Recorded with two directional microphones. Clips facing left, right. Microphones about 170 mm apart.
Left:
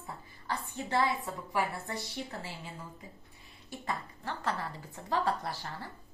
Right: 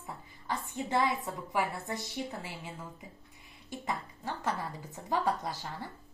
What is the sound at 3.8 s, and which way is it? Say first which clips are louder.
A woman's voice: even; 15° right (ahead or behind).